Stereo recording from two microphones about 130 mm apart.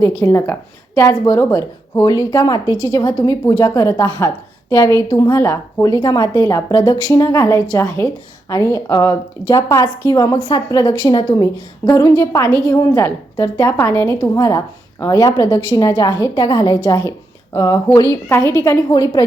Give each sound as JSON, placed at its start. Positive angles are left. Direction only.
{"t": 0.2, "sound": "a woman's voice", "side_deg": 25}
{"t": 12.9, "sound": "a woman's voice", "side_deg": 15}
{"t": 13.3, "sound": "a woman's voice", "side_deg": 25}